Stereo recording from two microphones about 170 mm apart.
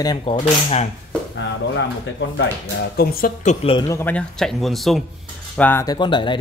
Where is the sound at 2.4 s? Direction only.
80° left.